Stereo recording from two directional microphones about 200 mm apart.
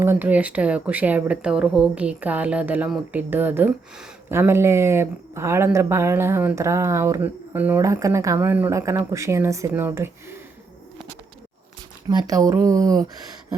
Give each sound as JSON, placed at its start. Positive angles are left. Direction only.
{"t": 0.0, "sound": "speech", "side_deg": -10}
{"t": 12.0, "sound": "speech", "side_deg": -20}